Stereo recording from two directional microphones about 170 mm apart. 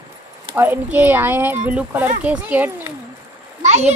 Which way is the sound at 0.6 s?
10° right (ahead or behind).